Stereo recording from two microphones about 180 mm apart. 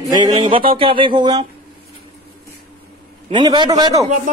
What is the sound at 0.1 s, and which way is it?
A man's voice, 25° right (ahead or behind).